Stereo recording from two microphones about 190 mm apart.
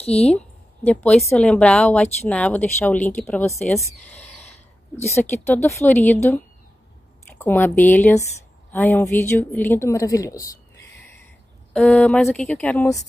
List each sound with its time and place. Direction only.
0.0 s a woman's voice: 35° left (ahead or behind)
0.3 s a woman's voice: 5° left (ahead or behind)
5.1 s a woman's voice: 15° left (ahead or behind)
7.3 s a woman's voice: 10° left (ahead or behind)
11.7 s a woman's voice: 5° left (ahead or behind)